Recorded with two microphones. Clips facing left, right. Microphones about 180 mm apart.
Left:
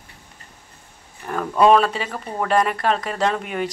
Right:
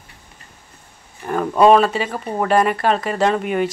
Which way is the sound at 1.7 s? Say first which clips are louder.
Right 2 dB; 5° right (ahead or behind).